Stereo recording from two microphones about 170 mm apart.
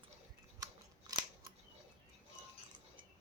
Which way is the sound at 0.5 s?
20° right (ahead or behind).